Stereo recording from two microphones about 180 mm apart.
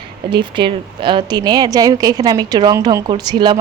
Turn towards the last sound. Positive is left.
turn(degrees=-25)  # may be behind; listen again after turning